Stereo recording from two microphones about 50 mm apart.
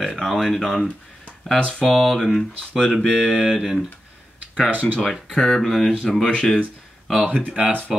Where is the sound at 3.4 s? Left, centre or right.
Centre.